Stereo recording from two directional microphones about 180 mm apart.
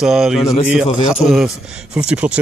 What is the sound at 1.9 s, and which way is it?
Speech, 5° right (ahead or behind).